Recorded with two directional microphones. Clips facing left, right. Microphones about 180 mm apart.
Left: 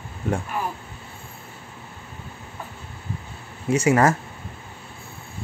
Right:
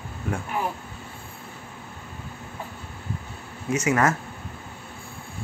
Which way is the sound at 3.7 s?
30° left (ahead or behind).